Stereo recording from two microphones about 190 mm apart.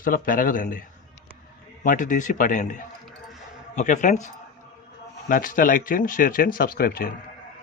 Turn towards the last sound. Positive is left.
turn(degrees=50)  # may be behind; listen again after turning